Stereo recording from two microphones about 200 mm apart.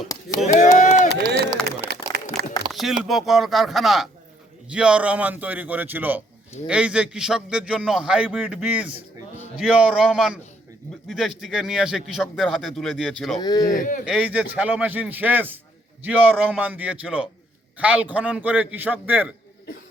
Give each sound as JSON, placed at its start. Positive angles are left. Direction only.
{"t": 0.4, "sound": "a sound", "side_deg": 35}
{"t": 1.6, "sound": "a sound", "side_deg": 5}
{"t": 2.7, "sound": "a man's voice", "side_deg": 0}
{"t": 13.4, "sound": "speech", "side_deg": 20}
{"t": 13.7, "sound": "speech", "side_deg": 40}
{"t": 14.0, "sound": "a man's voice", "side_deg": -5}